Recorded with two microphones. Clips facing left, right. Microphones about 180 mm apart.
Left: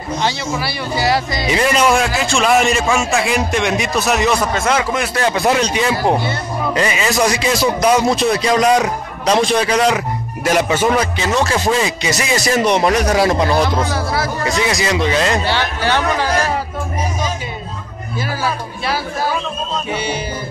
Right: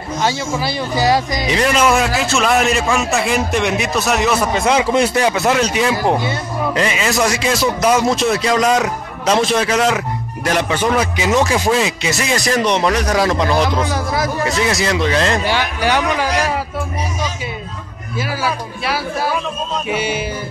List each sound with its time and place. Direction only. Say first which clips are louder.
0.2 s speech: right 3 dB; 15° right (ahead or behind)
1.5 s a man's voice: even; centre (ahead or behind); by 4.8 s 15° right (ahead or behind)
5.6 s a man's voice: even; 5° right (ahead or behind)
11.0 s speech: right 1 dB; 15° right (ahead or behind)
11.7 s a man's voice: even; centre (ahead or behind)
12.6 s speech: left 2 dB; 10° left (ahead or behind)
13.9 s speech: even; 15° right (ahead or behind)
14.4 s a man's voice: even; centre (ahead or behind)
15.4 s speech: right 1 dB; 10° right (ahead or behind)
19.9 s speech: right 3 dB; 5° right (ahead or behind)